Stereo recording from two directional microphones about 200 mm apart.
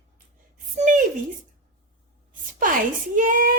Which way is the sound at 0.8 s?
40° right (ahead or behind).